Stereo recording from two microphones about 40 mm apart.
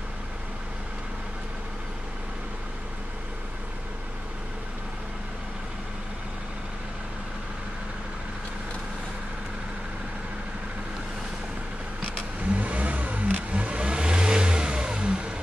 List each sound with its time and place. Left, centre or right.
12.5 s vehicle: right